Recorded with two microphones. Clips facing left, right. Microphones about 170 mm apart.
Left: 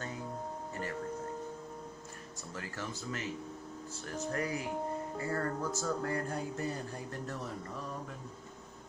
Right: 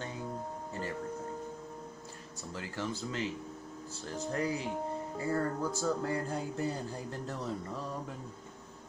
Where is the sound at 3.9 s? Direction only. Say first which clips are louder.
Right 1 dB; 35° right (ahead or behind).